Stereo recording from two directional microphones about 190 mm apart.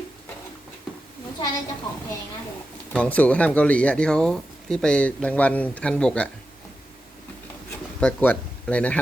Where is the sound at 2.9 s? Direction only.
5° left (ahead or behind).